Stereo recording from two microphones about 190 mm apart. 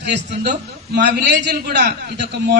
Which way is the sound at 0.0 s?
65° right (ahead or behind).